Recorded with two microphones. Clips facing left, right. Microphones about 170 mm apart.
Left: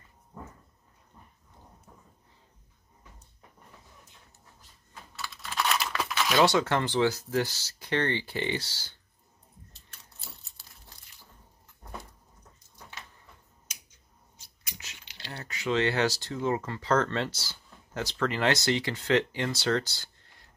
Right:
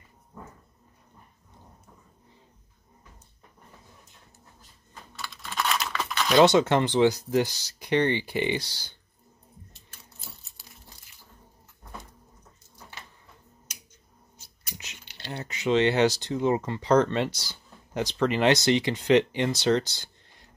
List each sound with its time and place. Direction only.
4.9 s computer keyboard: 5° left (ahead or behind)
6.3 s speech: 20° right (ahead or behind)
9.8 s keys jangling: centre (ahead or behind)
15.3 s speech: 20° right (ahead or behind)